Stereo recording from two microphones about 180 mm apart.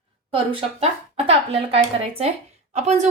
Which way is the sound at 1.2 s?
35° right (ahead or behind).